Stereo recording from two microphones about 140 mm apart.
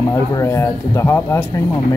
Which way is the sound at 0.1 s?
25° left (ahead or behind).